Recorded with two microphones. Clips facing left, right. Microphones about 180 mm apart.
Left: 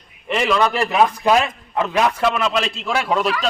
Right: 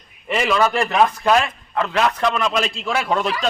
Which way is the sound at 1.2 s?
15° left (ahead or behind).